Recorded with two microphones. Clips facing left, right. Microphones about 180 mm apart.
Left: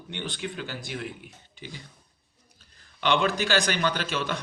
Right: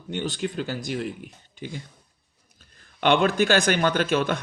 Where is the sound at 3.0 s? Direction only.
50° right (ahead or behind).